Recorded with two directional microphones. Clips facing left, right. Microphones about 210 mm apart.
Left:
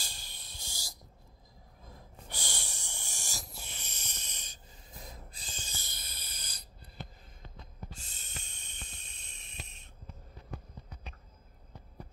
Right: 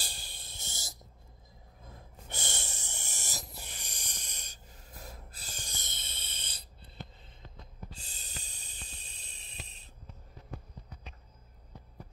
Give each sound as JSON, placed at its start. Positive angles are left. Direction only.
{"t": 0.0, "sound": "cricket", "side_deg": -30}
{"t": 2.2, "sound": "snort", "side_deg": -20}
{"t": 5.4, "sound": "snoring", "side_deg": -10}
{"t": 8.0, "sound": "a sound", "side_deg": -35}